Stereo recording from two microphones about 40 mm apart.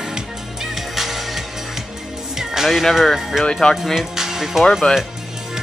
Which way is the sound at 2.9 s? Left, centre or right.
Centre.